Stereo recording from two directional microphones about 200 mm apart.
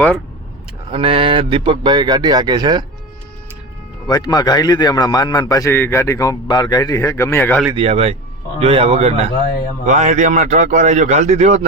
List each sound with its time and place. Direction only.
0.9 s a man's voice: 25° right (ahead or behind)
4.0 s a man's voice: 20° left (ahead or behind)
7.8 s a man's voice: 30° right (ahead or behind)